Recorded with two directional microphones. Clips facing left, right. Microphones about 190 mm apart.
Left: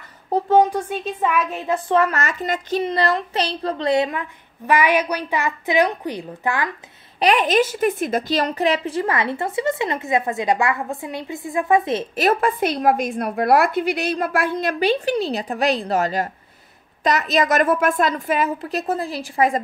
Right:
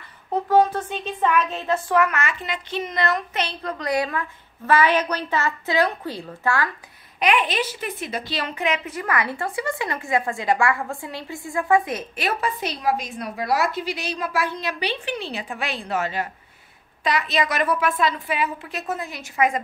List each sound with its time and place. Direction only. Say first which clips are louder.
0.3 s speech: left 2 dB; 20° left (ahead or behind)
2.0 s a woman's voice: left 2 dB; 35° left (ahead or behind); by 6.7 s 20° left (ahead or behind)
7.2 s a woman's voice: left 5 dB; 40° left (ahead or behind)
12.2 s a woman's voice: left 8 dB; 50° left (ahead or behind)